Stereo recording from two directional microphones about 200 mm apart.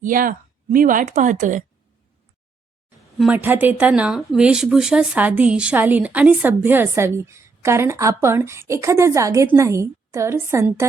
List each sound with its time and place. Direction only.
0.0 s a woman's voice: 45° right (ahead or behind)
3.2 s speech: 5° right (ahead or behind)